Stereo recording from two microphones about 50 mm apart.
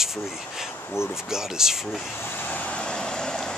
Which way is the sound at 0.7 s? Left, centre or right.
Left.